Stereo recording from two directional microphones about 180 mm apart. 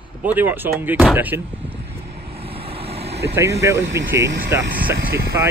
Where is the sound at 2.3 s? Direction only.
30° right (ahead or behind).